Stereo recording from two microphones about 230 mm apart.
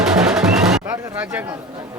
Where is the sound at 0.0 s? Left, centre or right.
Centre.